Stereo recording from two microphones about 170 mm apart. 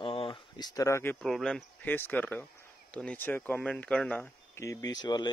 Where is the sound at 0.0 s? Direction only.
30° left (ahead or behind); by 1.1 s 15° left (ahead or behind).